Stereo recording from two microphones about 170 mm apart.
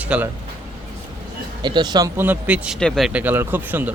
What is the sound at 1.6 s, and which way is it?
Speech, 25° right (ahead or behind).